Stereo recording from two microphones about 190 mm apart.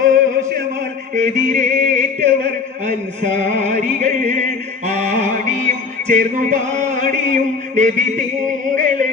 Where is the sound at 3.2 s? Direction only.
40° right (ahead or behind).